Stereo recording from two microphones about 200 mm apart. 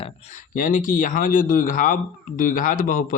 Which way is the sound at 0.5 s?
40° left (ahead or behind).